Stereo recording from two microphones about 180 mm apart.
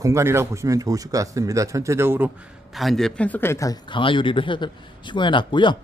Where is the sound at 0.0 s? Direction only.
15° right (ahead or behind).